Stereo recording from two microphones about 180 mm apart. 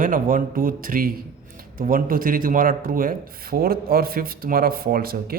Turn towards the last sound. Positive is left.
turn(degrees=-55)  # may be behind; listen again after turning